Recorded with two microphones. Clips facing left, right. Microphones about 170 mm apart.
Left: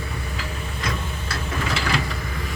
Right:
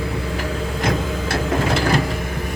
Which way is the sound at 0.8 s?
55° right (ahead or behind).